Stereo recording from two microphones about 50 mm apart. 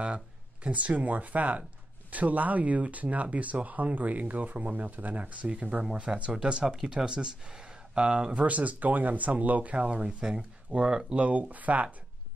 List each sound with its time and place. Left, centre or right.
0.7 s speech: right
11.2 s speech: right